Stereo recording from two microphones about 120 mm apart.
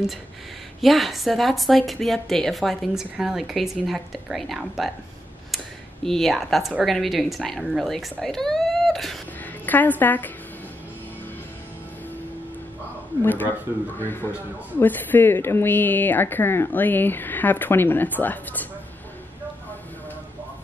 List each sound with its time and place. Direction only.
0.7 s a woman's voice: centre (ahead or behind)
6.0 s a woman's voice: centre (ahead or behind)
9.7 s a woman's voice: 15° left (ahead or behind)
13.2 s a woman's voice: 15° left (ahead or behind)